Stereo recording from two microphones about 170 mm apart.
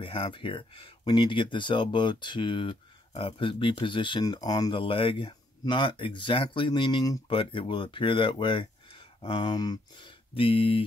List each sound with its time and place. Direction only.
0.0 s speech: 30° left (ahead or behind)